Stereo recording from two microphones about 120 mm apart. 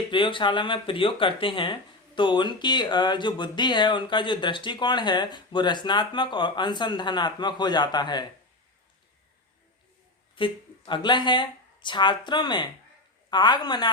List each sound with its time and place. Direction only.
0.1 s speech: 45° left (ahead or behind)
10.3 s speech: 45° left (ahead or behind)